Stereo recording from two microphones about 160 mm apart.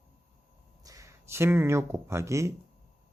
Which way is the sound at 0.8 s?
20° right (ahead or behind).